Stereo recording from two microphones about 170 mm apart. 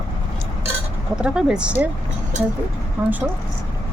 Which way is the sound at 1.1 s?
5° right (ahead or behind).